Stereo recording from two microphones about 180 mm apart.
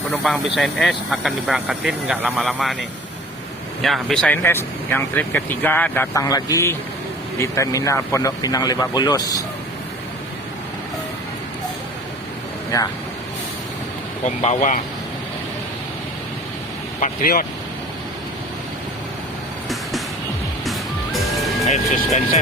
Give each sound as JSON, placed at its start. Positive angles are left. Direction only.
{"t": 0.1, "sound": "speech", "side_deg": 0}
{"t": 3.8, "sound": "speech", "side_deg": 0}
{"t": 12.7, "sound": "speech", "side_deg": 20}
{"t": 14.3, "sound": "speech", "side_deg": 40}
{"t": 17.0, "sound": "speech", "side_deg": 55}
{"t": 20.7, "sound": "music", "side_deg": 0}
{"t": 21.7, "sound": "speech", "side_deg": 40}